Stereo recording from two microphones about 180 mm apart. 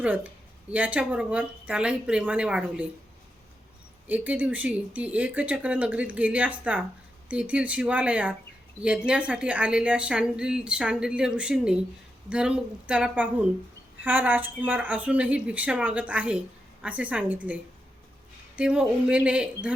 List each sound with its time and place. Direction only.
0.0 s speech: 5° right (ahead or behind)
4.0 s a woman's voice: 10° right (ahead or behind)